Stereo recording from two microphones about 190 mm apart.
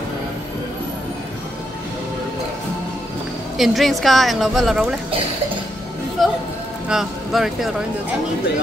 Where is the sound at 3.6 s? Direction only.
Centre (ahead or behind).